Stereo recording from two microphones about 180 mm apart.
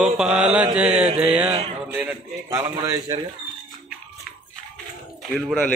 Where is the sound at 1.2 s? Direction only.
5° right (ahead or behind).